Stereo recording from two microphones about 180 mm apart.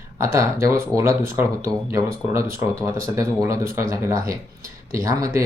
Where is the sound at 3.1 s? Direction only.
15° right (ahead or behind).